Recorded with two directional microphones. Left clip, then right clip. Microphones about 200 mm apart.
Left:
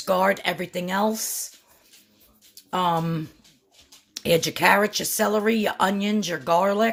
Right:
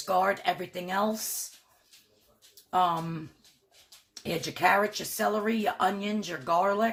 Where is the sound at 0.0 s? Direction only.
45° left (ahead or behind).